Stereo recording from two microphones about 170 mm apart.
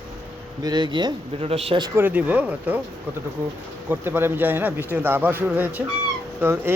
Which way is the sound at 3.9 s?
10° right (ahead or behind).